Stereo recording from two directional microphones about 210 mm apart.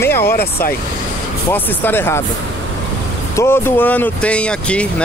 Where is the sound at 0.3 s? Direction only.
45° left (ahead or behind).